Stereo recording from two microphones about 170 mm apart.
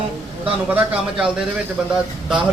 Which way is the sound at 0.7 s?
5° right (ahead or behind).